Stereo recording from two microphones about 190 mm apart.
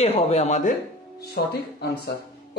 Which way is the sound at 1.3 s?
60° left (ahead or behind).